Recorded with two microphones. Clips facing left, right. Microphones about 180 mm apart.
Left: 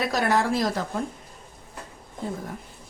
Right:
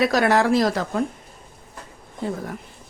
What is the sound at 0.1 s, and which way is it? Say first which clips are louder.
Speech: right 5 dB; 75° right (ahead or behind).